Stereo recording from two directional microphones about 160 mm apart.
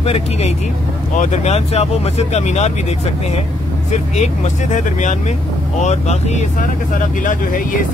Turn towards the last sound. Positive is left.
turn(degrees=55)  # may be behind; listen again after turning